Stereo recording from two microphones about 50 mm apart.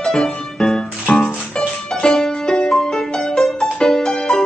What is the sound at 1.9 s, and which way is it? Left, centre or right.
Music, centre.